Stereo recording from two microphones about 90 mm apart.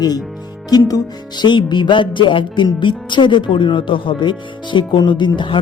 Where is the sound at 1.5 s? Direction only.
60° left (ahead or behind).